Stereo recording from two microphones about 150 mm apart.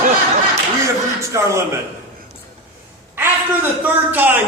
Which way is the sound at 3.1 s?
15° right (ahead or behind).